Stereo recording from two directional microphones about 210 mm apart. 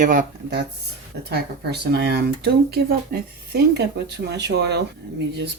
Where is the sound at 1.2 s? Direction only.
50° right (ahead or behind).